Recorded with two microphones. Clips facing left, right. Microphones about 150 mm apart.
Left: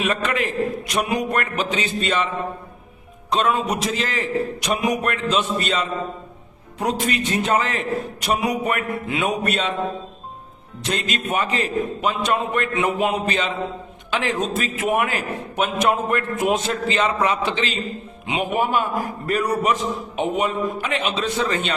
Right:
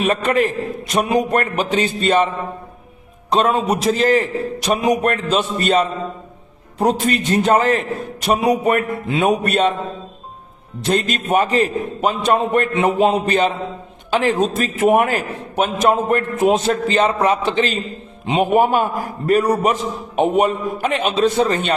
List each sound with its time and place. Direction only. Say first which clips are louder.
0.0 s a man's voice: right 6 dB; 40° right (ahead or behind)
3.3 s a man's voice: right 4 dB; 35° right (ahead or behind)
4.6 s a man's voice: right 8 dB; 30° right (ahead or behind)
5.1 s a man's voice: right 2 dB; 45° right (ahead or behind)
10.9 s a man's voice: right 7 dB; 45° right (ahead or behind)